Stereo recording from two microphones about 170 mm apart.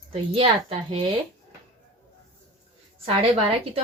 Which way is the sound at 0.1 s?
35° right (ahead or behind).